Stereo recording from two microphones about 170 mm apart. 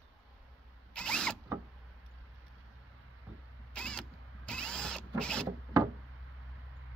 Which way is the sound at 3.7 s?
5° left (ahead or behind).